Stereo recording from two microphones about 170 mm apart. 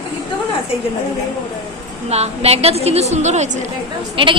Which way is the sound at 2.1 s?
40° right (ahead or behind).